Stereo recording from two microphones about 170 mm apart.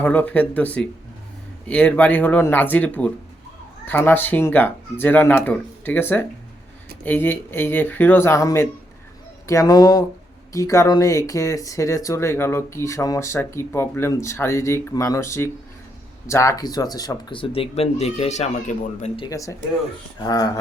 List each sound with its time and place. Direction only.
0.0 s speech: 10° left (ahead or behind); by 19.2 s 40° left (ahead or behind)
19.2 s speech: 20° left (ahead or behind)